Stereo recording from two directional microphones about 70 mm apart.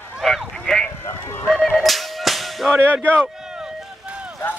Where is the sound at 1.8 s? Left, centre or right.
Centre.